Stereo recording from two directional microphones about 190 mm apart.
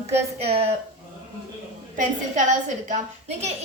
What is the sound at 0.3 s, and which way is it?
Speech, 30° right (ahead or behind).